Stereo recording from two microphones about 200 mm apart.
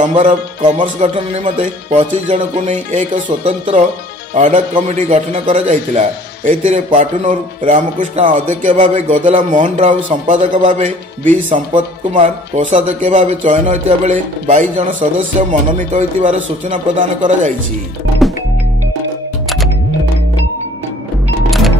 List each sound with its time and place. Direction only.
0.1 s a man's voice: 35° right (ahead or behind)
21.5 s music: centre (ahead or behind)